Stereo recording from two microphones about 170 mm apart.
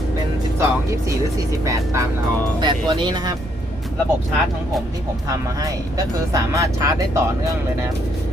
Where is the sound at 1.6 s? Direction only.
20° right (ahead or behind).